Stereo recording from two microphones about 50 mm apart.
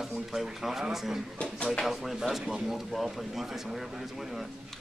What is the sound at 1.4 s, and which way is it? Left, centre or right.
Speech, centre.